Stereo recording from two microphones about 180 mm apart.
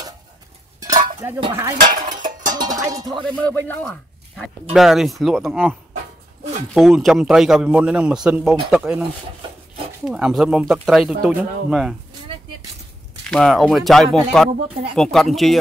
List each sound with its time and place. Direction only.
0.7 s dishes: 20° right (ahead or behind)
2.0 s music: 45° right (ahead or behind)
2.4 s music: 20° right (ahead or behind)
3.3 s speech: 10° left (ahead or behind)
4.4 s a man's voice: centre (ahead or behind)
10.0 s a man's voice: 5° right (ahead or behind)
13.3 s a man's voice: 5° left (ahead or behind)